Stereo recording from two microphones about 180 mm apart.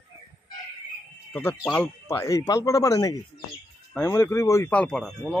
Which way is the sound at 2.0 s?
20° left (ahead or behind).